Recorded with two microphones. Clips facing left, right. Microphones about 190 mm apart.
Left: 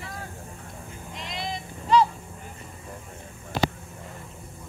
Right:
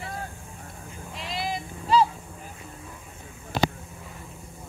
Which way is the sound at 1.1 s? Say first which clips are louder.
Right 3 dB; 5° right (ahead or behind).